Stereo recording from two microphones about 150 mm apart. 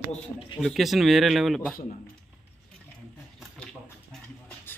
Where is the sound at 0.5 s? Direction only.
Centre (ahead or behind).